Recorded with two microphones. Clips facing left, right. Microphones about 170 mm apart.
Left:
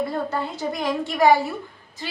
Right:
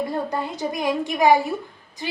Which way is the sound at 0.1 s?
15° right (ahead or behind).